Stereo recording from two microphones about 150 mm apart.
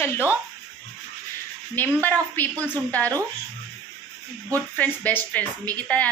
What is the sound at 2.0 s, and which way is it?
Speech, 10° left (ahead or behind).